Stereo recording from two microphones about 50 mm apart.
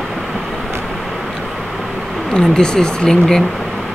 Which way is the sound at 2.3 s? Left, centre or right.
Centre.